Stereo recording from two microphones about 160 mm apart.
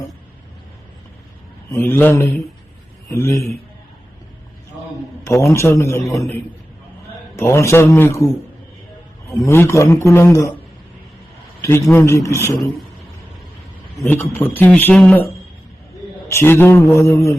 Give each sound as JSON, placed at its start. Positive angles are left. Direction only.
{"t": 1.7, "sound": "a man's voice", "side_deg": 15}
{"t": 5.2, "sound": "a man's voice", "side_deg": 15}
{"t": 7.3, "sound": "a man's voice", "side_deg": 15}
{"t": 9.4, "sound": "a man's voice", "side_deg": 15}
{"t": 11.6, "sound": "a man's voice", "side_deg": 15}
{"t": 13.9, "sound": "a man's voice", "side_deg": 5}
{"t": 16.3, "sound": "a man's voice", "side_deg": 15}